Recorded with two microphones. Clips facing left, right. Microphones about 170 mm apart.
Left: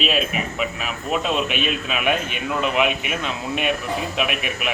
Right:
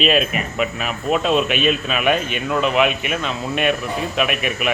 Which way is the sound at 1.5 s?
60° right (ahead or behind).